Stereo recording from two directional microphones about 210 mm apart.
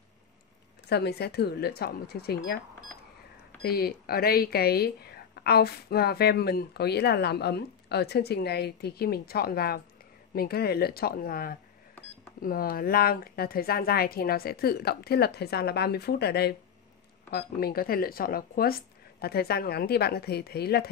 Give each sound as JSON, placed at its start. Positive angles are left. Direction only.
{"t": 0.8, "sound": "speech", "side_deg": 50}
{"t": 3.6, "sound": "speech", "side_deg": 45}